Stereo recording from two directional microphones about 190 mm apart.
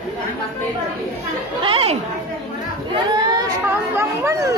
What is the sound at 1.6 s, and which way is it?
Speech, 30° right (ahead or behind).